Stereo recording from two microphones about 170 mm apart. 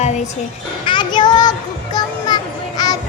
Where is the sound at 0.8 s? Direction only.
25° left (ahead or behind).